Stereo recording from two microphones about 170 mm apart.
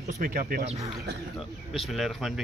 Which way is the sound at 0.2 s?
55° right (ahead or behind).